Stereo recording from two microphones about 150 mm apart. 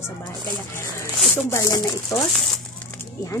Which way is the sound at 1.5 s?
20° left (ahead or behind).